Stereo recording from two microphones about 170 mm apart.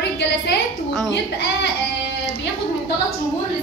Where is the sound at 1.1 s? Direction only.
90° left.